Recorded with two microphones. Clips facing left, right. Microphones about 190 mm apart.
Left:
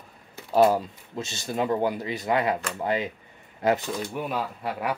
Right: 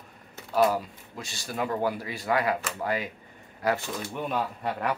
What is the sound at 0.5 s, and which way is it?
Speech, 25° left (ahead or behind).